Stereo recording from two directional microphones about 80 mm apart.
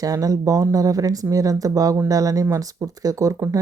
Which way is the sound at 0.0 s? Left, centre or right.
Right.